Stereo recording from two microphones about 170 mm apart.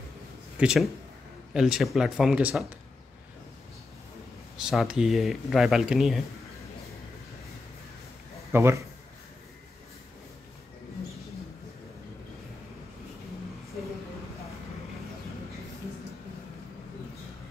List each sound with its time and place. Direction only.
0.6 s speech: 5° right (ahead or behind)
4.6 s speech: 5° right (ahead or behind)
8.5 s a man's voice: 15° right (ahead or behind)